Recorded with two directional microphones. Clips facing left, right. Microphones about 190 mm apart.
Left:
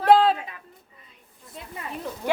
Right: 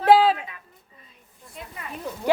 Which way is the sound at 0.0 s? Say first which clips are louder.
Right 1 dB; 5° right (ahead or behind).